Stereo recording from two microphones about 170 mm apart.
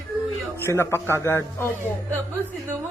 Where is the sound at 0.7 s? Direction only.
15° left (ahead or behind).